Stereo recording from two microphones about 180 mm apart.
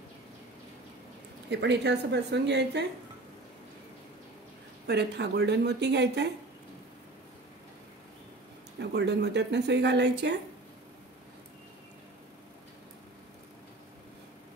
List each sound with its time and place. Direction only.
1.5 s speech: 75° right (ahead or behind)
4.8 s speech: 70° right (ahead or behind)
8.7 s speech: 70° right (ahead or behind)